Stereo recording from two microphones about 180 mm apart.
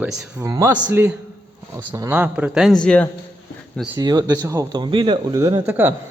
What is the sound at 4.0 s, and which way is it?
Speech, 20° right (ahead or behind).